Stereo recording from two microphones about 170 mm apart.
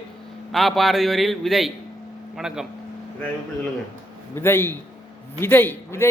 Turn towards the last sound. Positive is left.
turn(degrees=15)  # may be behind; listen again after turning